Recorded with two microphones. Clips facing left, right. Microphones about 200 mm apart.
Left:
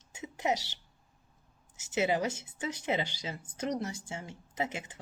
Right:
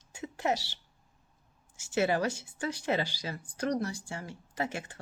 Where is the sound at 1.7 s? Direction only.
20° left (ahead or behind).